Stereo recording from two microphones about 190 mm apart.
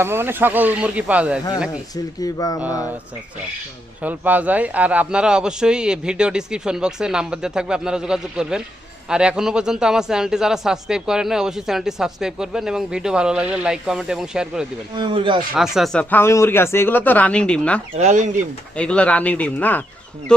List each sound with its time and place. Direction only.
0.0 s speech: 10° right (ahead or behind)
2.2 s speech: 20° left (ahead or behind)
4.0 s speech: 10° right (ahead or behind)
14.9 s speech: 25° right (ahead or behind)
15.5 s speech: centre (ahead or behind)
17.9 s speech: 40° right (ahead or behind)
18.8 s speech: 5° left (ahead or behind)